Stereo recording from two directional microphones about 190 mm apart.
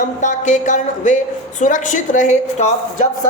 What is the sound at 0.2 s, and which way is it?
Speech, 40° left (ahead or behind).